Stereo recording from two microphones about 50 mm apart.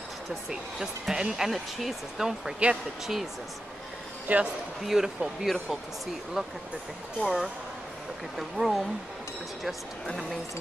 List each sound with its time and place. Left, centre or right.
0.5 s speech: centre
4.3 s a man's voice: right
4.8 s speech: centre